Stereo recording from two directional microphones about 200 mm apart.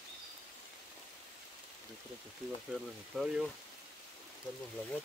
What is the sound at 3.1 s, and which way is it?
Speech, centre (ahead or behind).